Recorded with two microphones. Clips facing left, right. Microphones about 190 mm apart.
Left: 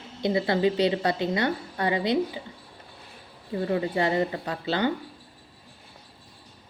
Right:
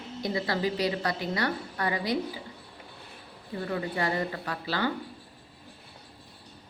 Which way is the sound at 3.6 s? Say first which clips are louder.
Left 5 dB; 25° left (ahead or behind).